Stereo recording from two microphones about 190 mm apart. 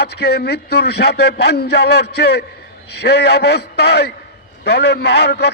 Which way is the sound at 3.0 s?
65° left (ahead or behind).